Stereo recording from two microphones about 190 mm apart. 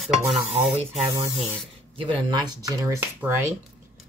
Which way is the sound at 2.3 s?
20° right (ahead or behind).